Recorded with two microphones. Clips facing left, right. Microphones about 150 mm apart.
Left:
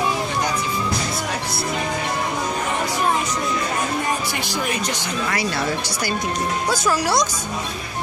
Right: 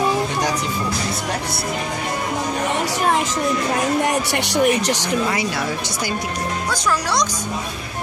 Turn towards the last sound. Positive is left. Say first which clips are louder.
# left 1 dB
turn(degrees=10)  # may be behind; listen again after turning